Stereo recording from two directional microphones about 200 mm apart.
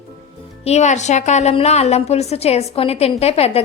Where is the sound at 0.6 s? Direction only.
35° left (ahead or behind).